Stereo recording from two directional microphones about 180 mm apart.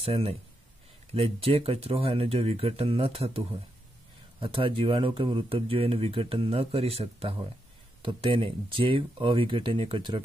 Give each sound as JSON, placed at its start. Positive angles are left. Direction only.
{"t": 0.0, "sound": "speech", "side_deg": -35}